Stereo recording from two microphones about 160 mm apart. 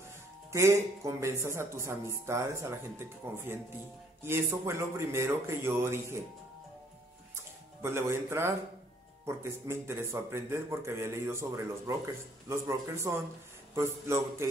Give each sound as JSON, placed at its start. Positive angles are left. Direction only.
{"t": 0.5, "sound": "a man's voice", "side_deg": -15}
{"t": 7.8, "sound": "a man's voice", "side_deg": -15}